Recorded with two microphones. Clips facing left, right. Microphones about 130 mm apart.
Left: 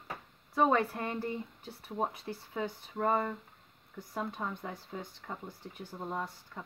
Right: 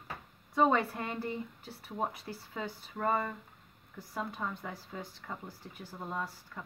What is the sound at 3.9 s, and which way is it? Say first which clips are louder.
Speech: left 1 dB; 20° left (ahead or behind).